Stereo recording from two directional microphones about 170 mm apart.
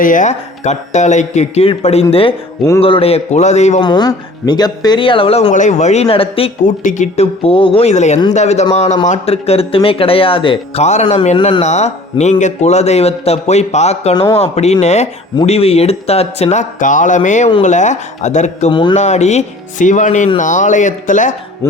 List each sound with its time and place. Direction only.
0.0 s speech: 50° left (ahead or behind)
3.8 s speech: 25° left (ahead or behind)
5.5 s speech: 45° left (ahead or behind)
6.7 s speech: 45° left (ahead or behind)
18.7 s speech: 30° left (ahead or behind)
18.9 s speech: 40° left (ahead or behind)
21.6 s speech: 15° left (ahead or behind)